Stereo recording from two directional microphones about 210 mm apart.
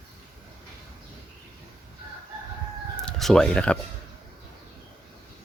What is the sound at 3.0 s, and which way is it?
Speech, centre (ahead or behind).